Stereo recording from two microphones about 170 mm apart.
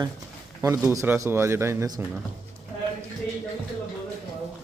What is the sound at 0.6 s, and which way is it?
Speech, 15° right (ahead or behind).